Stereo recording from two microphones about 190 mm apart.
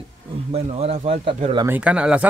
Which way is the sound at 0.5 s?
30° right (ahead or behind).